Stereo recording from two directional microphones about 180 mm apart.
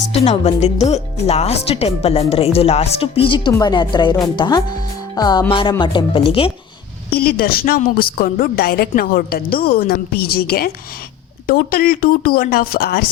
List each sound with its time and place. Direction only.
0.1 s speech: 35° left (ahead or behind)
7.2 s speech: 55° left (ahead or behind)